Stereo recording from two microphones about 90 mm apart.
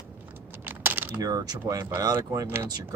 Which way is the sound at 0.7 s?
20° right (ahead or behind).